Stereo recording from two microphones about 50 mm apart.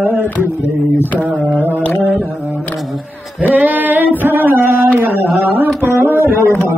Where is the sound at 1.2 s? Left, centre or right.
Right.